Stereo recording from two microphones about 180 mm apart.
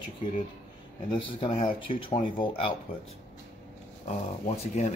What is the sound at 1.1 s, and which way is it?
Speech, 30° left (ahead or behind).